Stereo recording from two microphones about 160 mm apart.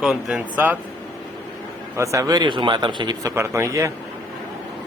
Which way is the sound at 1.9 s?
20° right (ahead or behind).